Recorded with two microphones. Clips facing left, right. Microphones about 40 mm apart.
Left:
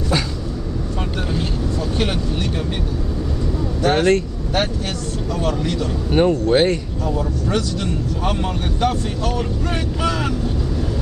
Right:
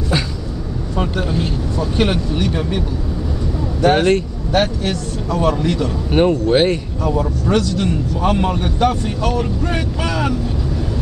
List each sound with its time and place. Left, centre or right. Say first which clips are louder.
3.8 s speech: right 2 dB; centre
4.5 s speech: right 5 dB; right
5.3 s speech: right 5 dB; centre
7.1 s speech: right 4 dB; right
8.2 s speech: right 7 dB; centre